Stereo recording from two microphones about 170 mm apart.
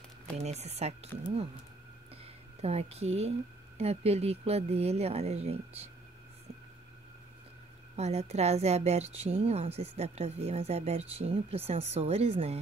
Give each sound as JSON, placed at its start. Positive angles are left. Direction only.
{"t": 0.4, "sound": "a woman's voice", "side_deg": -40}
{"t": 2.6, "sound": "a woman's voice", "side_deg": -35}
{"t": 7.9, "sound": "a woman's voice", "side_deg": -40}